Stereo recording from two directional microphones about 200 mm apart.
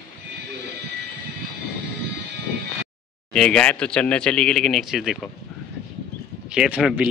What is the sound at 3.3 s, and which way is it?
Speech, 5° left (ahead or behind).